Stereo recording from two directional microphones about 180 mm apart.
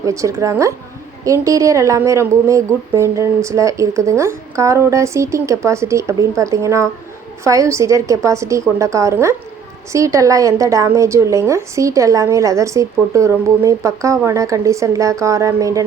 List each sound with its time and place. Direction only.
0.0 s a woman's voice: 15° right (ahead or behind)